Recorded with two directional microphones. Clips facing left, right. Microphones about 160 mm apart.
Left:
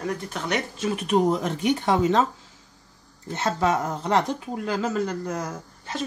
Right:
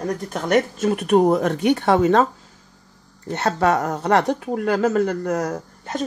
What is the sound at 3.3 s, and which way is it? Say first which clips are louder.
Speech: right 4 dB; 65° right (ahead or behind).